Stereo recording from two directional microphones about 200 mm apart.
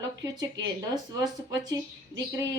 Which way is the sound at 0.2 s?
20° right (ahead or behind).